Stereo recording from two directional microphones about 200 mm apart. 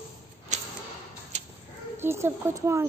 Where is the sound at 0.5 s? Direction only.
35° right (ahead or behind).